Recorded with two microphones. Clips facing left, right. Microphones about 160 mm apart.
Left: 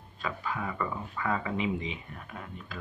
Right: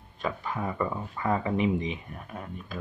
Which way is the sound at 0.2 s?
25° right (ahead or behind).